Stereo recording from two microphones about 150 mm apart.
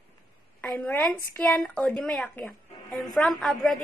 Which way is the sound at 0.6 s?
10° left (ahead or behind).